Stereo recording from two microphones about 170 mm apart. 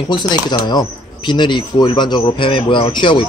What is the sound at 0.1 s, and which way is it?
Speech, 25° left (ahead or behind).